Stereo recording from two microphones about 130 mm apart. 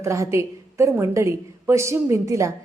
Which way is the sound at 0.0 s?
25° right (ahead or behind).